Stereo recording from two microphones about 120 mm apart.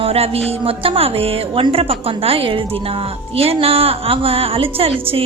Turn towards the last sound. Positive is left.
turn(degrees=-50)  # may be behind; listen again after turning